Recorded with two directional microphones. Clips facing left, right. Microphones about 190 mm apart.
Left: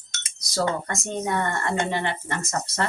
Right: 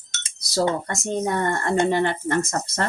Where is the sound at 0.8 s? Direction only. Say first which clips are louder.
Right 3 dB; 35° right (ahead or behind).